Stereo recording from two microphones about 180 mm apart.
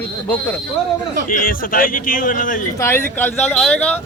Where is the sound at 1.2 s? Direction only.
50° left (ahead or behind).